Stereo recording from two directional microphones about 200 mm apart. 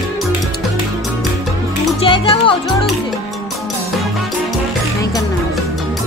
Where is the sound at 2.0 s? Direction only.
25° left (ahead or behind).